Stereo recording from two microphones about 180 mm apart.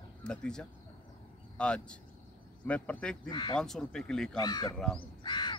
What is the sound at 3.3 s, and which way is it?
Speech, 25° left (ahead or behind).